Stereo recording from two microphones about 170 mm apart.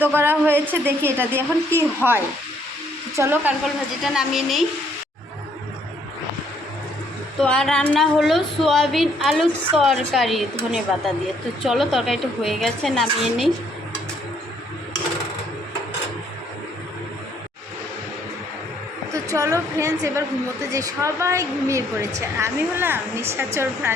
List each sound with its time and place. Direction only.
0.0 s a woman's voice: 10° right (ahead or behind)
4.0 s a woman's voice: centre (ahead or behind)
7.4 s a woman's voice: 5° left (ahead or behind)
19.1 s a woman's voice: 20° right (ahead or behind)